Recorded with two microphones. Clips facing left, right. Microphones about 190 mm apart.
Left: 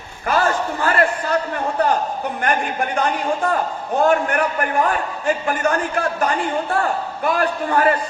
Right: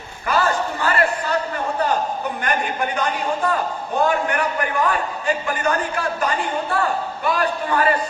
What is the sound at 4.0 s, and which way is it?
A man's voice, 50° left (ahead or behind).